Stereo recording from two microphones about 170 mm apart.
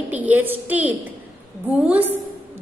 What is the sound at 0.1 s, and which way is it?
Speech, 10° right (ahead or behind).